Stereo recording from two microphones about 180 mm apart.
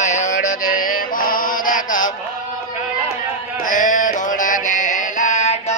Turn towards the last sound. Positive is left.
turn(degrees=40)  # may be behind; listen again after turning